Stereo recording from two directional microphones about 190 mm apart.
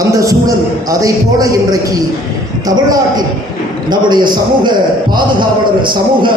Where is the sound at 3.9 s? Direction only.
25° right (ahead or behind).